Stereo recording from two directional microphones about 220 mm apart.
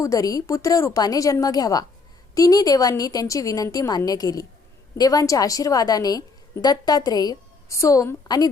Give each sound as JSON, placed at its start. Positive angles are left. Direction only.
{"t": 0.0, "sound": "a woman's voice", "side_deg": 15}